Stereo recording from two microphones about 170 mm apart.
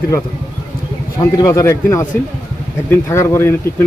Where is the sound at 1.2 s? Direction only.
20° left (ahead or behind).